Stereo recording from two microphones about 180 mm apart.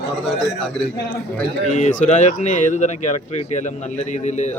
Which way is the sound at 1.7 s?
45° left (ahead or behind).